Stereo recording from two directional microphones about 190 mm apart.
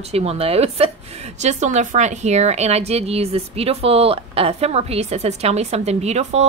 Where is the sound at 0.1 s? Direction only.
35° right (ahead or behind).